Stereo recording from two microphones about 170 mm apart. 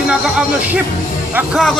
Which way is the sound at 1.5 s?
5° left (ahead or behind).